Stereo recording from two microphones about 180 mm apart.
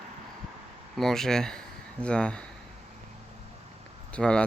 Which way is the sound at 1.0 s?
Centre (ahead or behind).